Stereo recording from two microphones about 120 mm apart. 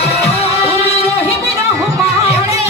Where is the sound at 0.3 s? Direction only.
60° left (ahead or behind).